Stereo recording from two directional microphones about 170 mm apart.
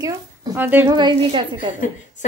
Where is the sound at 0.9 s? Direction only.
30° right (ahead or behind).